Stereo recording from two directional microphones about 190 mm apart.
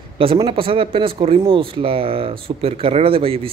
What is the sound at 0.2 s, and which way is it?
Speech, 25° right (ahead or behind).